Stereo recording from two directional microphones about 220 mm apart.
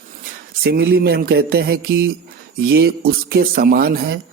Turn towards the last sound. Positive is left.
turn(degrees=-45)  # may be behind; listen again after turning